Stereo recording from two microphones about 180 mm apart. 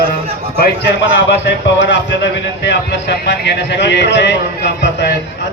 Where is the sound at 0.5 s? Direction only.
70° left (ahead or behind).